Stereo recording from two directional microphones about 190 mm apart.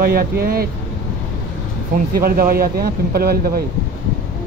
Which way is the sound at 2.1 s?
50° right (ahead or behind).